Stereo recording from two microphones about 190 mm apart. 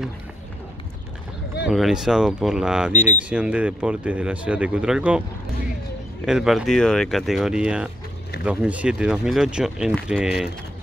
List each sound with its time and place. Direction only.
1.7 s speech: centre (ahead or behind)
2.9 s speech: 40° left (ahead or behind)
3.3 s speech: 5° right (ahead or behind)
6.2 s speech: centre (ahead or behind)